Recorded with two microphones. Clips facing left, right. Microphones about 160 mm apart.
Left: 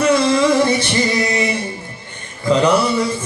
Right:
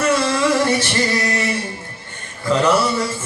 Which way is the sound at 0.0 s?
15° left (ahead or behind).